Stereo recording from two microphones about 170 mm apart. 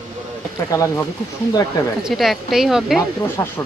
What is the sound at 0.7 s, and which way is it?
Speech, 20° left (ahead or behind).